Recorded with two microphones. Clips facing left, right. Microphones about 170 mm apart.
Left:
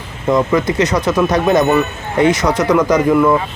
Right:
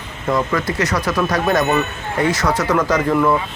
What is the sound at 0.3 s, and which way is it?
Speech, 20° left (ahead or behind).